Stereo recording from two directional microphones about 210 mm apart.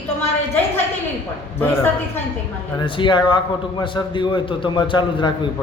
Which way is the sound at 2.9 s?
20° left (ahead or behind).